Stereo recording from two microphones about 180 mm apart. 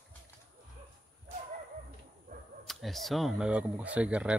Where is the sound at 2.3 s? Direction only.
50° right (ahead or behind).